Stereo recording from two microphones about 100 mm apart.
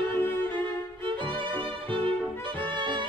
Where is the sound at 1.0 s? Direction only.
55° right (ahead or behind).